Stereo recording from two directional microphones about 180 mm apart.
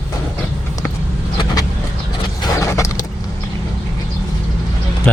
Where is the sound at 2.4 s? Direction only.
15° left (ahead or behind).